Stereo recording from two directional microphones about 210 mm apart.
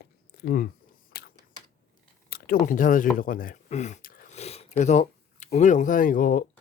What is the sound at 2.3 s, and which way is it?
Speech, 40° left (ahead or behind).